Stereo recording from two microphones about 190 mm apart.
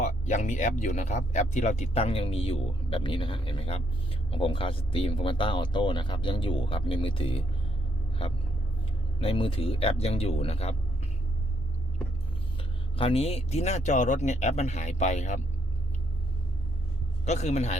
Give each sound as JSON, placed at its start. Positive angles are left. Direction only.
{"t": 0.0, "sound": "speech", "side_deg": 40}
{"t": 9.2, "sound": "speech", "side_deg": 30}
{"t": 12.5, "sound": "speech", "side_deg": 30}
{"t": 17.2, "sound": "speech", "side_deg": 35}